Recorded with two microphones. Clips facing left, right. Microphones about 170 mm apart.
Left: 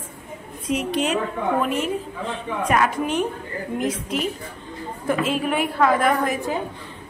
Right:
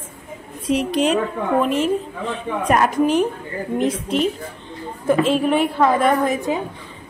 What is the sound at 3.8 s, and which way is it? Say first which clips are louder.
A woman's voice: right 6 dB; 30° right (ahead or behind).